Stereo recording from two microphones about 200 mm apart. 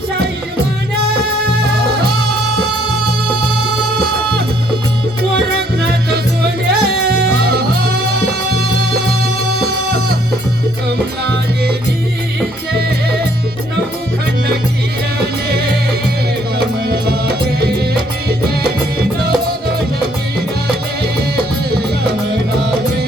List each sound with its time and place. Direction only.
5.8 s music: 50° right (ahead or behind)
12.7 s music: 50° right (ahead or behind)
16.8 s music: 50° right (ahead or behind)